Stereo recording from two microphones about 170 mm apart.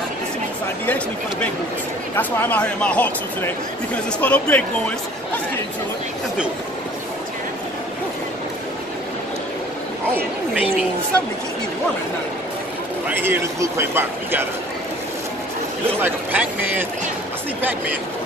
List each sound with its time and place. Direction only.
0.8 s speech: 10° left (ahead or behind)
13.1 s a man's voice: 15° right (ahead or behind)
16.0 s a man's voice: 10° right (ahead or behind)